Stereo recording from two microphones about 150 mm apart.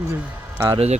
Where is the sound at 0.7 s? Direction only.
45° right (ahead or behind).